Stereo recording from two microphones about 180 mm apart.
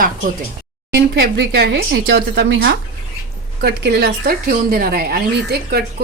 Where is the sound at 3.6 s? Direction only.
65° right (ahead or behind).